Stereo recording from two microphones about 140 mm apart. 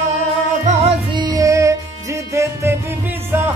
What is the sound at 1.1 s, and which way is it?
Music, 25° right (ahead or behind).